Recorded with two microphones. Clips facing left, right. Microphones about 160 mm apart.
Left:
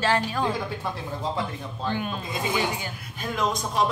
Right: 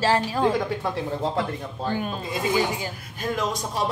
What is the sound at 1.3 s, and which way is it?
Speech, 45° right (ahead or behind).